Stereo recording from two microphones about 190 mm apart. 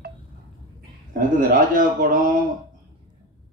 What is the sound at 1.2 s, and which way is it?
Speech, 45° right (ahead or behind).